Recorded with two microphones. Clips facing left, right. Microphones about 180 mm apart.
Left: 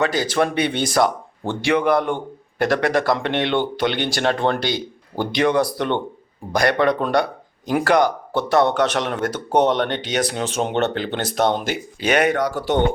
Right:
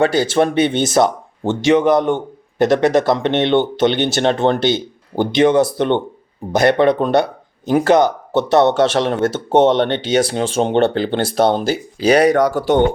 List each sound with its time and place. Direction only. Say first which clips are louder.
0.0 s speech: right 5 dB; 30° right (ahead or behind); by 12.7 s 45° right (ahead or behind)